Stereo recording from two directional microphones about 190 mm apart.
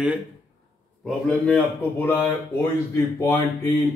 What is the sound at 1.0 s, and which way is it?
Speech, 10° left (ahead or behind).